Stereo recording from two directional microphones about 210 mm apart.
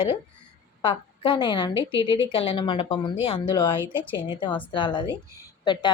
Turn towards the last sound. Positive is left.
turn(degrees=20)  # may be behind; listen again after turning